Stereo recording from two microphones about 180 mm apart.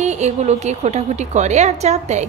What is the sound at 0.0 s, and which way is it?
A woman's voice, 40° right (ahead or behind).